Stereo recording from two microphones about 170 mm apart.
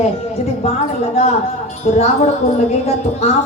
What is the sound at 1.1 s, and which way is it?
A woman's voice, 40° left (ahead or behind).